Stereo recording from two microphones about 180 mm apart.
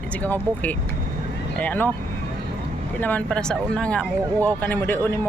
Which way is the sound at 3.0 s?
10° left (ahead or behind).